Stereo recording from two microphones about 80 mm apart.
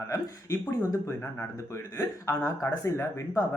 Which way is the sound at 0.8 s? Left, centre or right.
Left.